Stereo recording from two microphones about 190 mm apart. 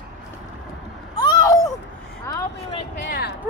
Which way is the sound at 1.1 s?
20° left (ahead or behind).